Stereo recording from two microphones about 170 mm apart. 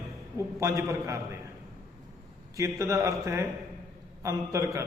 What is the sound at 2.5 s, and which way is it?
A man's voice, 20° right (ahead or behind).